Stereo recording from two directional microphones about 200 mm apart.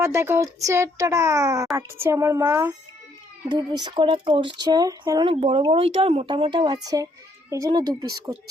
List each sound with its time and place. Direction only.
0.0 s speech: 10° right (ahead or behind)